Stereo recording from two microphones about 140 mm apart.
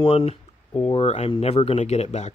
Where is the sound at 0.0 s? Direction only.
45° left (ahead or behind).